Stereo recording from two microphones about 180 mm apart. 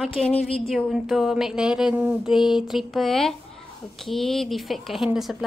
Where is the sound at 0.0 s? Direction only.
5° left (ahead or behind).